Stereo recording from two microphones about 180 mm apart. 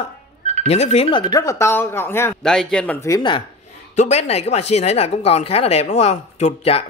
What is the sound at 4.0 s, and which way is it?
Speech, 35° left (ahead or behind).